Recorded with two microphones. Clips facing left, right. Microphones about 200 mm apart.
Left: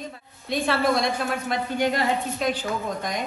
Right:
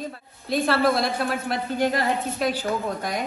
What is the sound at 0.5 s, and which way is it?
A woman's voice, centre (ahead or behind).